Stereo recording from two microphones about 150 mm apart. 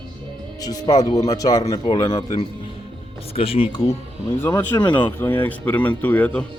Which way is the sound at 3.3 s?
40° left (ahead or behind).